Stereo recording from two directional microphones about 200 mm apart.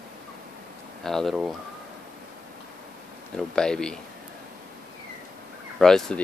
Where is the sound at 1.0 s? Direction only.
Centre (ahead or behind).